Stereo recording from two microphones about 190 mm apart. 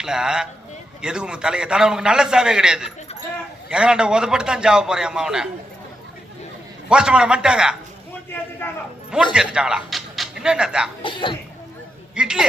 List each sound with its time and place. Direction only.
0.0 s a sound: 5° right (ahead or behind)
1.0 s a man's voice: 5° right (ahead or behind)
6.8 s a man's voice: 5° right (ahead or behind)
8.6 s a man's voice: 10° left (ahead or behind)
9.3 s speech: 5° right (ahead or behind)
11.0 s speech: 25° left (ahead or behind)
12.1 s a man's voice: 5° right (ahead or behind)